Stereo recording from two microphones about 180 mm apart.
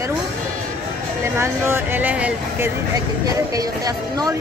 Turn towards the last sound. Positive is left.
turn(degrees=-20)  # may be behind; listen again after turning